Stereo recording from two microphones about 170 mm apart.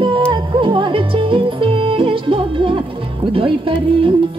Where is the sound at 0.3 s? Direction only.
30° right (ahead or behind).